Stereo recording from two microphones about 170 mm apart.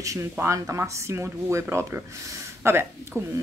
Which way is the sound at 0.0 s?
15° right (ahead or behind).